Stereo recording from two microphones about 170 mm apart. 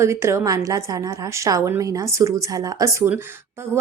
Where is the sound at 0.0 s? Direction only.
15° right (ahead or behind).